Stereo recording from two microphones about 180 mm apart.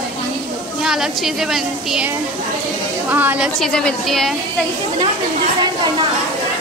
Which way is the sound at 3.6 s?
5° left (ahead or behind).